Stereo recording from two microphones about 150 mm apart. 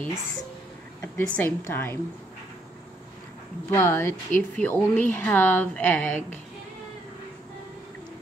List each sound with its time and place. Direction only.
1.0 s speech: 10° left (ahead or behind)
3.7 s speech: 15° left (ahead or behind)